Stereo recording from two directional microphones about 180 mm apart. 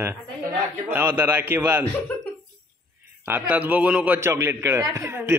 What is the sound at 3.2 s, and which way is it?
Speech, 10° right (ahead or behind).